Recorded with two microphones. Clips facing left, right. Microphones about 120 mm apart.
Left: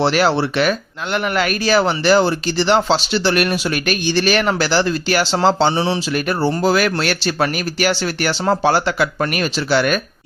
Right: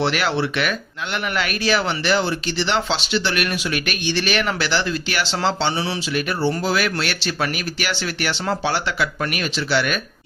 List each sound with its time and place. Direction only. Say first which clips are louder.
0.0 s speech: left 5 dB; 35° left (ahead or behind)
6.1 s speech: even; 45° left (ahead or behind)